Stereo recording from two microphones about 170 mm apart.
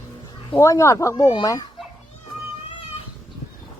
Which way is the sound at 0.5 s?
15° left (ahead or behind).